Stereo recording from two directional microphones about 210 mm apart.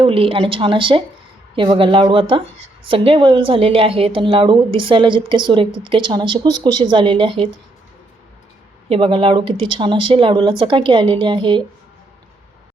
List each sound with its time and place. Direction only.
0.0 s a woman's voice: 25° right (ahead or behind)
8.9 s a woman's voice: 25° right (ahead or behind)